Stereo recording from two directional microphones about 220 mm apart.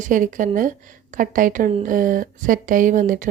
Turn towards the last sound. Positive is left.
turn(degrees=-35)  # may be behind; listen again after turning